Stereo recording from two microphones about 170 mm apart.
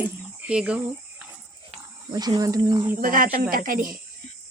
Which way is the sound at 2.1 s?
25° right (ahead or behind).